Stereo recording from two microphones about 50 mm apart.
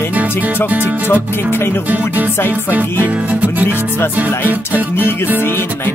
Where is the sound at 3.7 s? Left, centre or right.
Left.